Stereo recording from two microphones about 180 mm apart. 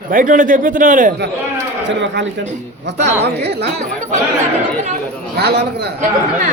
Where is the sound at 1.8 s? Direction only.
80° right.